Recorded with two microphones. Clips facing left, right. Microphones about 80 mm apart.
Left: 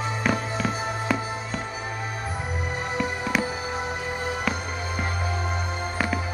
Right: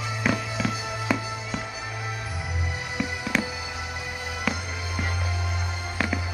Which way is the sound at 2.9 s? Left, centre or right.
Left.